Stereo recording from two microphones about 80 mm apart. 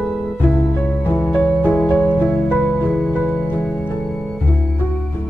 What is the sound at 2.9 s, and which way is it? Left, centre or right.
Music, centre.